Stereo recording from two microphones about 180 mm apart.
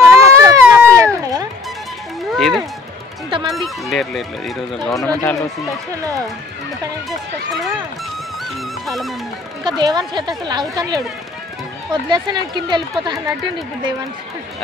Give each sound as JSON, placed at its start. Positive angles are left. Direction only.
{"t": 0.0, "sound": "a sound", "side_deg": -15}
{"t": 0.9, "sound": "run", "side_deg": -20}
{"t": 2.3, "sound": "run", "side_deg": 0}
{"t": 3.4, "sound": "speech", "side_deg": 0}
{"t": 8.8, "sound": "music", "side_deg": 0}
{"t": 9.7, "sound": "a woman's voice", "side_deg": -25}